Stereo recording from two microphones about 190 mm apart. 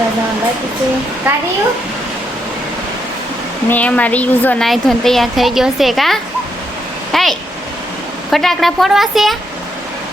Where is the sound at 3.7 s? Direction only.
10° left (ahead or behind).